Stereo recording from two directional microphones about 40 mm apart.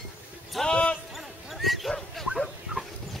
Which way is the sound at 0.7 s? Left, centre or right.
Left.